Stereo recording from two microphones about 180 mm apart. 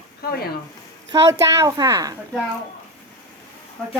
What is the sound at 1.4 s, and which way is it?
Speech, 15° right (ahead or behind).